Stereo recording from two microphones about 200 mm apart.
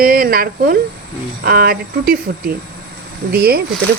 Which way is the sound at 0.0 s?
45° right (ahead or behind).